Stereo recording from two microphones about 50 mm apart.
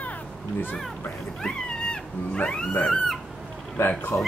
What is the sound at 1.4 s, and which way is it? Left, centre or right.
Cat, centre.